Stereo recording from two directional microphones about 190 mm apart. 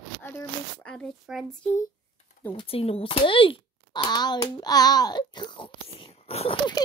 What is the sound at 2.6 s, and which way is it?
A child's voice, 30° left (ahead or behind).